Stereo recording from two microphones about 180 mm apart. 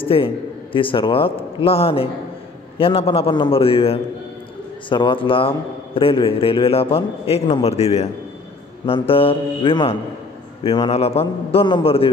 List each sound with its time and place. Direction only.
0.0 s a man's voice: 30° left (ahead or behind)